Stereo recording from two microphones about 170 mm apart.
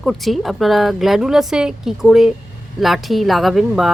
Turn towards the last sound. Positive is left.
turn(degrees=0)  # may be behind; listen again after turning